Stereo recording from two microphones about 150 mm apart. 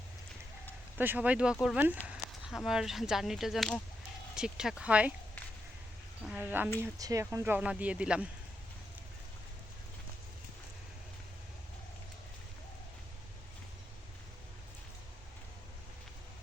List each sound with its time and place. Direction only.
0.9 s speech: 10° right (ahead or behind)
6.2 s speech: 10° right (ahead or behind)